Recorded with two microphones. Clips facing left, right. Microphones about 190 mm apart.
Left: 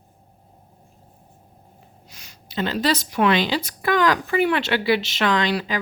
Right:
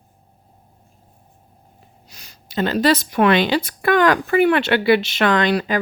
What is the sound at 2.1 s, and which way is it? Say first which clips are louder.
Speech: even; 35° right (ahead or behind).